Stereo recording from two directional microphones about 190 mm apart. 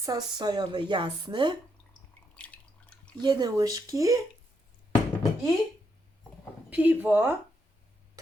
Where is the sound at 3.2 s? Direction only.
20° right (ahead or behind).